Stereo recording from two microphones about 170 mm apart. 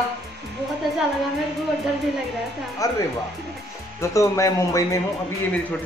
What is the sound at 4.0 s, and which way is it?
A man's voice, 20° left (ahead or behind).